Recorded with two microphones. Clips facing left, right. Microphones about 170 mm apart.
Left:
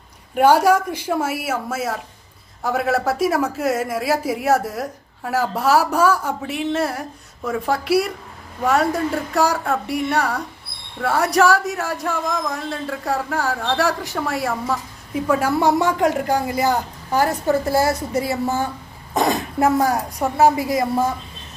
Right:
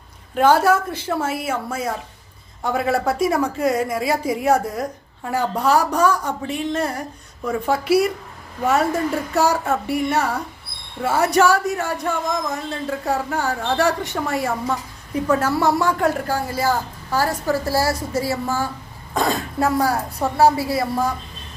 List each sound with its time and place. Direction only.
0.3 s speech: 10° left (ahead or behind)
15.5 s a woman's voice: 20° left (ahead or behind)